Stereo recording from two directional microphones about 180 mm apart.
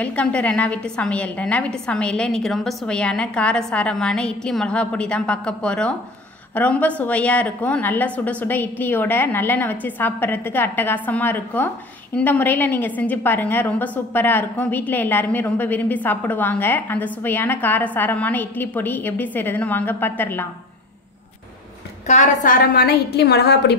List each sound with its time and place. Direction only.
0.0 s a woman's voice: 5° left (ahead or behind)
22.0 s a woman's voice: 40° left (ahead or behind); by 23.8 s 65° left (ahead or behind)